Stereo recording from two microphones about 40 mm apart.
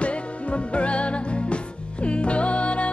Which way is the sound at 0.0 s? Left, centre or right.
Left.